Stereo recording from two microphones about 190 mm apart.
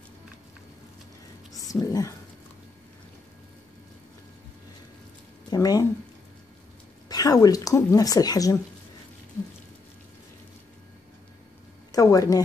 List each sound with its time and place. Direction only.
1.6 s a woman's voice: 20° left (ahead or behind)
5.5 s speech: 20° left (ahead or behind)
7.1 s speech: 20° left (ahead or behind)
11.9 s speech: 20° left (ahead or behind)